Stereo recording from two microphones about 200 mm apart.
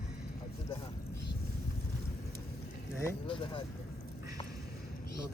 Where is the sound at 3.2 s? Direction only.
25° left (ahead or behind).